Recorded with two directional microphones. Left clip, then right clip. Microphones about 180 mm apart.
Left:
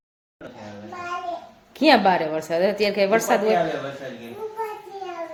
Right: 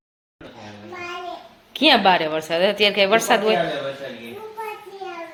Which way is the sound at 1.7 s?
Centre (ahead or behind).